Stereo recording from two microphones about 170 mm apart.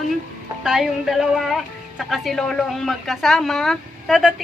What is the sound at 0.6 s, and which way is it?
Speech, centre (ahead or behind).